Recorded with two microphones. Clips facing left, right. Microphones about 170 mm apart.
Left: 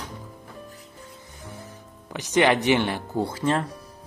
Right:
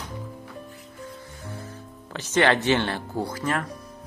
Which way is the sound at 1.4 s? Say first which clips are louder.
Right 1 dB; 15° left (ahead or behind).